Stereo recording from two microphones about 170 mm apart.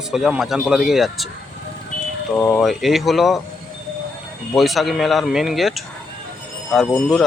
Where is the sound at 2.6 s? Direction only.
Centre (ahead or behind).